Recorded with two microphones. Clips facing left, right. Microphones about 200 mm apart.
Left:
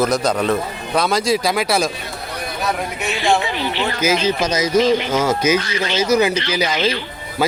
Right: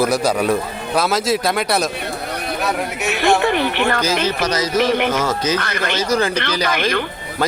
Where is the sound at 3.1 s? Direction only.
60° right (ahead or behind).